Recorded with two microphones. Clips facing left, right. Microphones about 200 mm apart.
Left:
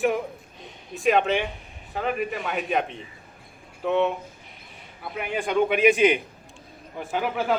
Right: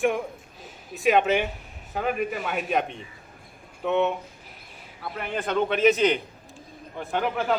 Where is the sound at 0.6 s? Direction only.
Centre (ahead or behind).